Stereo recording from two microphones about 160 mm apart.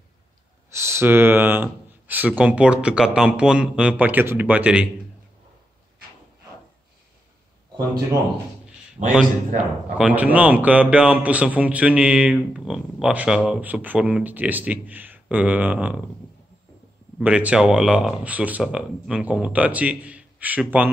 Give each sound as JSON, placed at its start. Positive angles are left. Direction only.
{"t": 0.7, "sound": "speech", "side_deg": -15}
{"t": 7.7, "sound": "speech", "side_deg": -25}
{"t": 9.9, "sound": "speech", "side_deg": -10}
{"t": 17.2, "sound": "speech", "side_deg": -10}